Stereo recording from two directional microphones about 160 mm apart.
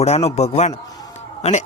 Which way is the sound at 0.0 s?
40° left (ahead or behind).